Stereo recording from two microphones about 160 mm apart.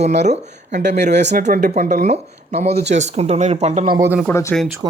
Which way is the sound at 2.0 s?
45° right (ahead or behind).